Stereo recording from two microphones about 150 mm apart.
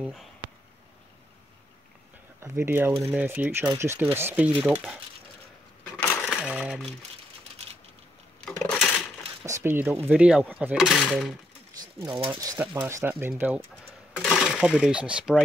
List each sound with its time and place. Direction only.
0.0 s speech: centre (ahead or behind)
2.4 s speech: 15° right (ahead or behind)
5.9 s coin: 5° left (ahead or behind)
6.5 s speech: 5° right (ahead or behind)
8.5 s a sound: 5° left (ahead or behind)
9.4 s speech: 15° right (ahead or behind); by 11.3 s centre (ahead or behind)
11.8 s speech: 25° right (ahead or behind); by 15.3 s 5° right (ahead or behind)